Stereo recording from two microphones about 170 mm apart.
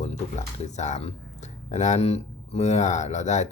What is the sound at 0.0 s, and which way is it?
Speech, 45° left (ahead or behind).